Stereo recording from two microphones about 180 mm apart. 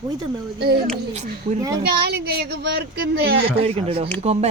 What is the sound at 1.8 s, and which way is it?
Speech, 65° right (ahead or behind).